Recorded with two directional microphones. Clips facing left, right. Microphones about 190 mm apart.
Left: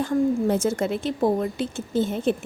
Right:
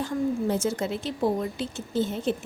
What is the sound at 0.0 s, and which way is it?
A woman's voice, 55° left (ahead or behind).